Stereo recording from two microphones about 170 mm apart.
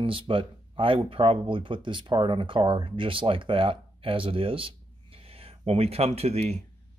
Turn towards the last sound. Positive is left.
turn(degrees=-40)  # may be behind; listen again after turning